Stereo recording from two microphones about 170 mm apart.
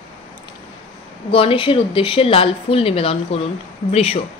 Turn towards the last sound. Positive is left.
turn(degrees=35)  # may be behind; listen again after turning